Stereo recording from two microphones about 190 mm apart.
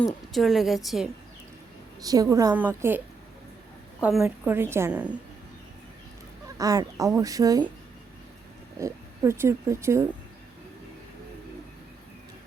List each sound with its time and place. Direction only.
0.1 s a woman's voice: centre (ahead or behind)
2.0 s speech: 20° right (ahead or behind)
4.0 s speech: 5° right (ahead or behind)
6.6 s speech: 20° right (ahead or behind)
8.8 s speech: 15° right (ahead or behind)